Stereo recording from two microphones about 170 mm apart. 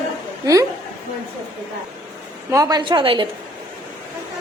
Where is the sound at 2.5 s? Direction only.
20° right (ahead or behind).